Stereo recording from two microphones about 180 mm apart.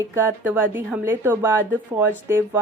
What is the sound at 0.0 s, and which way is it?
A woman's voice, 15° right (ahead or behind).